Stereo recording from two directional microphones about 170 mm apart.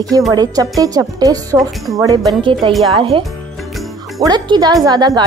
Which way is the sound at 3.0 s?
30° right (ahead or behind).